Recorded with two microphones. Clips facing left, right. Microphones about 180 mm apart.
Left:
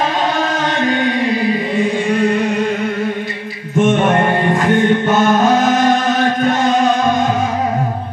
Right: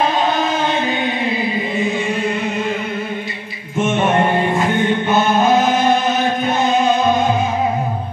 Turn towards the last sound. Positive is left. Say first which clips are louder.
# left 1 dB
turn(degrees=90)